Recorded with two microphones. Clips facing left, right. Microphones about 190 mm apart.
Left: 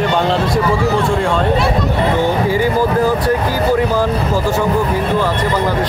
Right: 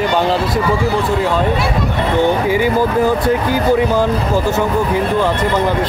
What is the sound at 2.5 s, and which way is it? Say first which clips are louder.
Speech: even; 20° right (ahead or behind).